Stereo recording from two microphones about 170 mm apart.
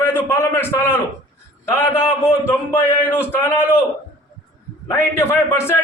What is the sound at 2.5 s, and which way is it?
A man's voice, 10° left (ahead or behind).